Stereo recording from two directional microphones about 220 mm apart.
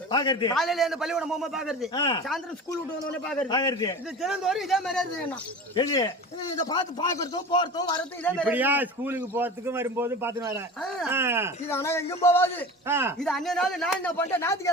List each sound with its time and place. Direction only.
0.1 s a man's voice: 20° left (ahead or behind)
0.5 s speech: centre (ahead or behind)
1.9 s a man's voice: 20° left (ahead or behind)
3.5 s a man's voice: 20° left (ahead or behind)
4.2 s speech: centre (ahead or behind)
5.7 s a man's voice: 15° left (ahead or behind)
8.4 s a man's voice: 10° right (ahead or behind)
10.8 s speech: centre (ahead or behind)
11.1 s a man's voice: 10° right (ahead or behind)
11.7 s speech: 10° left (ahead or behind)
12.9 s a man's voice: 10° right (ahead or behind)
13.1 s speech: centre (ahead or behind)